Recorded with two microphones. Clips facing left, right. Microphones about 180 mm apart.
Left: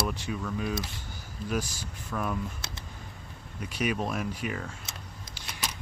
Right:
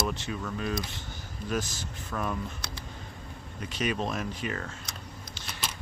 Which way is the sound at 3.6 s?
10° left (ahead or behind).